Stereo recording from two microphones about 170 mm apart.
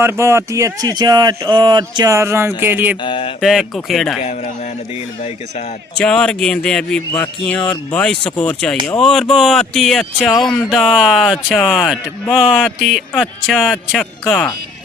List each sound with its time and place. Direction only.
0.0 s speech: 15° right (ahead or behind)
3.0 s mantra: 30° left (ahead or behind)
3.4 s speech: centre (ahead or behind)
6.0 s speech: 5° left (ahead or behind)
14.0 s speech: 10° left (ahead or behind)